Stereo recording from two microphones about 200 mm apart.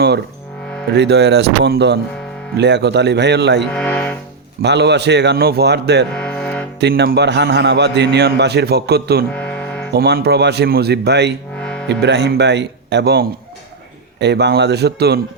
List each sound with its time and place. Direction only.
0.9 s a man's voice: 55° right (ahead or behind)
3.7 s speech: 5° left (ahead or behind)
4.6 s a man's voice: 60° right (ahead or behind)
6.1 s music: 5° left (ahead or behind)
6.7 s a man's voice: 55° right (ahead or behind)
9.3 s music: 5° left (ahead or behind)
9.9 s a man's voice: 50° right (ahead or behind)
11.5 s music: 5° left (ahead or behind)
11.9 s a man's voice: 60° right (ahead or behind)